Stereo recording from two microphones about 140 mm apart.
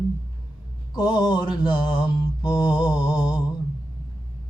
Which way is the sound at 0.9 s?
30° left (ahead or behind).